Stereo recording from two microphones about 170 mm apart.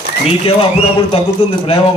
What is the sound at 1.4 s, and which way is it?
Speech, 40° left (ahead or behind).